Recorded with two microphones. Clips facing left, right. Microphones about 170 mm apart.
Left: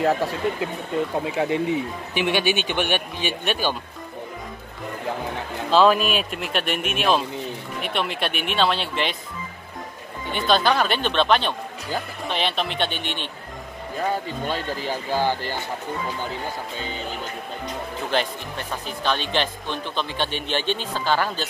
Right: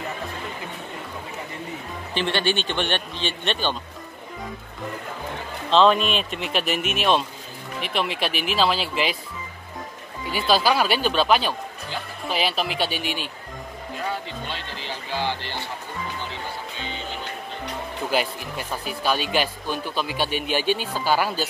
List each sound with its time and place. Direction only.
0.0 s speech: 75° left (ahead or behind)
1.2 s speech: 90° left
2.1 s speech: 10° left (ahead or behind)
5.7 s speech: 5° left (ahead or behind)
10.3 s speech: 5° right (ahead or behind)
14.5 s speech: 45° left (ahead or behind)
18.1 s speech: 10° right (ahead or behind)